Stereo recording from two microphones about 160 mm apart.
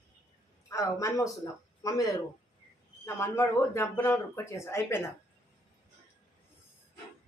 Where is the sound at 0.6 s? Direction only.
20° left (ahead or behind).